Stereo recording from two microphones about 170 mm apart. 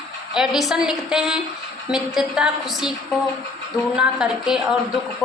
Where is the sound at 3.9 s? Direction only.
5° right (ahead or behind).